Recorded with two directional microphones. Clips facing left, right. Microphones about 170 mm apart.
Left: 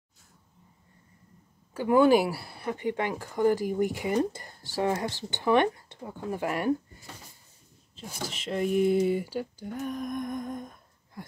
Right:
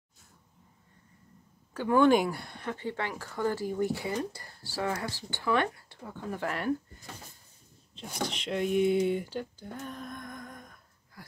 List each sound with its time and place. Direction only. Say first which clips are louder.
1.7 s speech: left 2 dB; 10° left (ahead or behind)
7.9 s speech: right 3 dB; 5° left (ahead or behind); by 11.2 s 20° left (ahead or behind)